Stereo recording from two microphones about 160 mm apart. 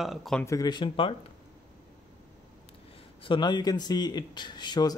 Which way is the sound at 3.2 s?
30° left (ahead or behind).